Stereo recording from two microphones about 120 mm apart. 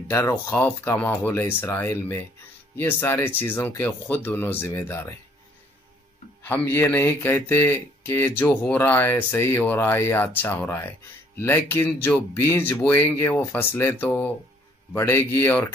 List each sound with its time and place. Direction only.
0.1 s speech: 25° left (ahead or behind)
6.4 s speech: 15° left (ahead or behind)